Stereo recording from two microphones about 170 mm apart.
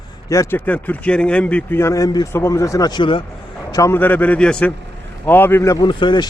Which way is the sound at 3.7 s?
15° left (ahead or behind).